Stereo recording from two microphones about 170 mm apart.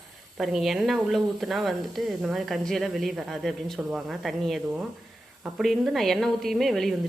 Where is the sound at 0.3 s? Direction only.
Centre (ahead or behind).